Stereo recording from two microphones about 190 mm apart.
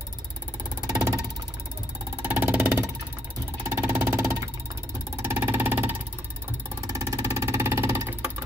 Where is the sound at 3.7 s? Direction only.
15° right (ahead or behind).